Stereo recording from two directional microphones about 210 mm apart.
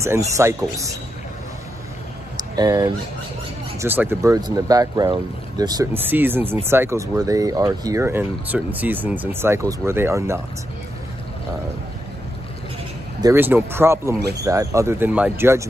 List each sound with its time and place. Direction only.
0.4 s speech: 15° right (ahead or behind)
2.3 s a sound: 20° right (ahead or behind)
3.8 s speech: 10° right (ahead or behind)
13.2 s speech: 10° right (ahead or behind)